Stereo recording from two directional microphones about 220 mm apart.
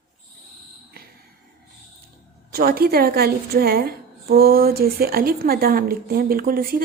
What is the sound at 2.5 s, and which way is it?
A woman's voice, 40° right (ahead or behind).